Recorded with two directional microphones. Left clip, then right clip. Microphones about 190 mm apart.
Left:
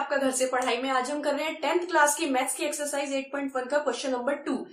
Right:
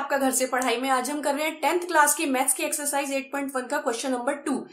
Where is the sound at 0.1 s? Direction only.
40° right (ahead or behind).